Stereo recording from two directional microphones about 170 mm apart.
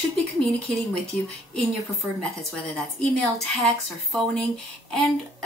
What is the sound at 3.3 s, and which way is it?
Speech, centre (ahead or behind).